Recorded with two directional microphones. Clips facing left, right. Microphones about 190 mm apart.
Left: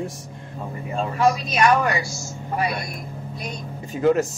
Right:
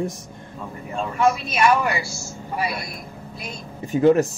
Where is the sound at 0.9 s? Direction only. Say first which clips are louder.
Even; centre (ahead or behind).